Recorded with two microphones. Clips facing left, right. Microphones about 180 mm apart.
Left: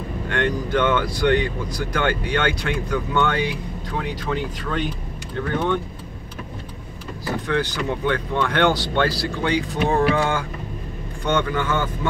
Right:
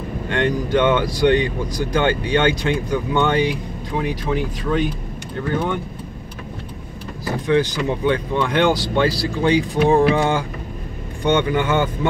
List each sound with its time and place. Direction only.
0.3 s speech: 15° right (ahead or behind)
7.4 s a man's voice: 15° right (ahead or behind)